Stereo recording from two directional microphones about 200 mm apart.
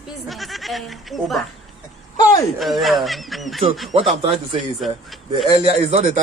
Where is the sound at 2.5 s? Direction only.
Centre (ahead or behind).